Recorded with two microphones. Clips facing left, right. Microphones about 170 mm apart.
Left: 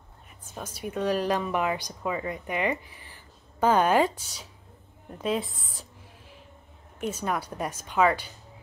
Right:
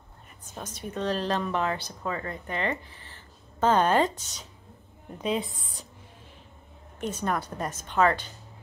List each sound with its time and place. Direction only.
0.5 s a woman's voice: 10° left (ahead or behind)
7.0 s speech: 5° left (ahead or behind)